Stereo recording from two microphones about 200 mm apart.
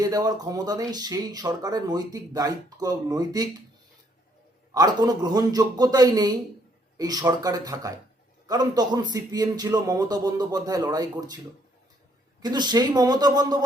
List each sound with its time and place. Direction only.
0.0 s speech: 20° right (ahead or behind)
4.7 s speech: 20° right (ahead or behind)
12.4 s speech: 20° right (ahead or behind)